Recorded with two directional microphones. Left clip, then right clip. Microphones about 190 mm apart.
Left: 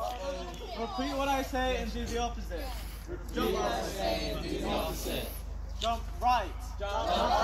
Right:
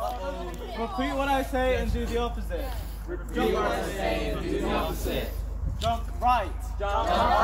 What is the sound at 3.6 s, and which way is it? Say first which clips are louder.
Speech: right 4 dB; centre (ahead or behind).